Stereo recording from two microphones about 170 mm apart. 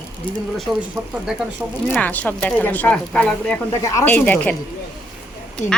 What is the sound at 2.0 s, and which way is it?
Speech, 10° left (ahead or behind).